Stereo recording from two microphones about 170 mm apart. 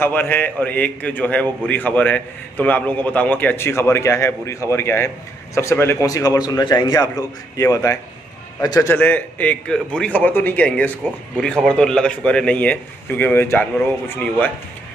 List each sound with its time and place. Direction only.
0.0 s a man's voice: 10° left (ahead or behind)